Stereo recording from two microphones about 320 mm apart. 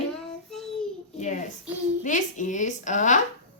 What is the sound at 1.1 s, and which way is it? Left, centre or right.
A child's voice, left.